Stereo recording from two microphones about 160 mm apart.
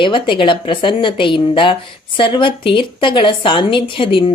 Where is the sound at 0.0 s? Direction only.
30° left (ahead or behind).